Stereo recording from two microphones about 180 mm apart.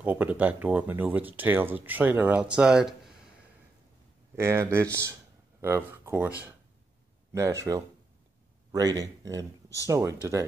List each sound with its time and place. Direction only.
0.0 s speech: 10° right (ahead or behind)
4.4 s speech: 15° right (ahead or behind)
7.3 s speech: 15° right (ahead or behind)